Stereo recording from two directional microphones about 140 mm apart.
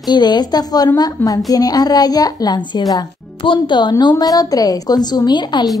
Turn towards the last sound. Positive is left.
turn(degrees=30)  # may be behind; listen again after turning